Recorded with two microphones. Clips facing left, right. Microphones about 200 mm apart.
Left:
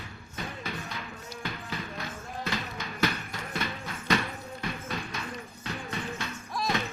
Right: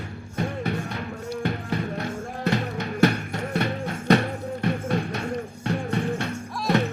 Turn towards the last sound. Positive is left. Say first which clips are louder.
# right 8 dB
turn(degrees=-60)  # may be behind; listen again after turning